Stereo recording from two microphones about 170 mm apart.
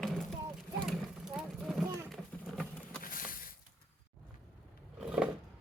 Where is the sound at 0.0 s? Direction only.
Centre (ahead or behind).